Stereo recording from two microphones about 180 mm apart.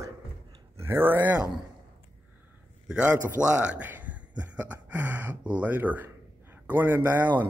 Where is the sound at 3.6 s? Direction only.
10° right (ahead or behind).